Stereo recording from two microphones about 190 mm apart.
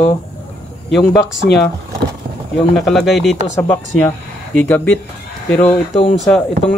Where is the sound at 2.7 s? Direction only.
Centre (ahead or behind).